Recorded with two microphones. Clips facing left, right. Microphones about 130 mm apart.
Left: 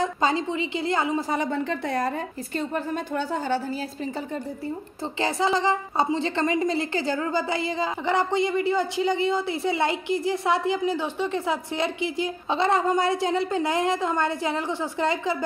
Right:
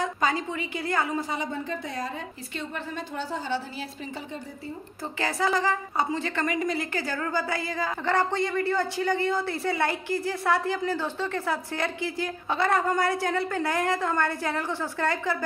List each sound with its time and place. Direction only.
0.0 s a woman's voice: 25° left (ahead or behind)
1.5 s a woman's voice: 70° left (ahead or behind); by 3.6 s 50° left (ahead or behind)
5.2 s a woman's voice: 25° left (ahead or behind)